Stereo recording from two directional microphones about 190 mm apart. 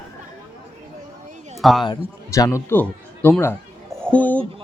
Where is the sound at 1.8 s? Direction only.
20° left (ahead or behind).